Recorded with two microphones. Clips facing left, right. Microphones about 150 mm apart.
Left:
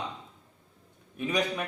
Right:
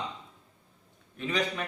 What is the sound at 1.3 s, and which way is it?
Speech, 15° left (ahead or behind).